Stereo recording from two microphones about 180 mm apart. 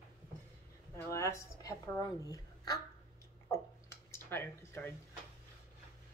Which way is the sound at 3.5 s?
15° left (ahead or behind).